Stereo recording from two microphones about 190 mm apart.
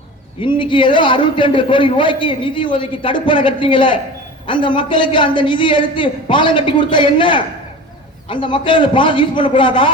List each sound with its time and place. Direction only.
0.4 s a man's voice: 25° left (ahead or behind)